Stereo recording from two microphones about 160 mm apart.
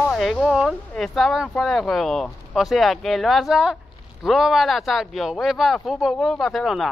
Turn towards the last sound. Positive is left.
turn(degrees=0)  # may be behind; listen again after turning